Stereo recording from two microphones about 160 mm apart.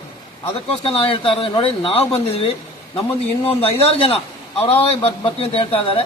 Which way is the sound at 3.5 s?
35° left (ahead or behind).